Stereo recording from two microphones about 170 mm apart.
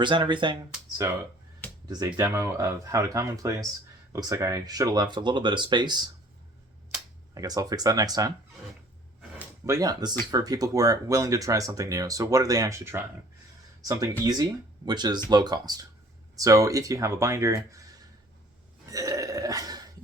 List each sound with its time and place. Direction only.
0.0 s speech: 30° right (ahead or behind)
7.3 s speech: 20° right (ahead or behind)
9.6 s speech: 20° right (ahead or behind)
18.9 s burping: 20° right (ahead or behind)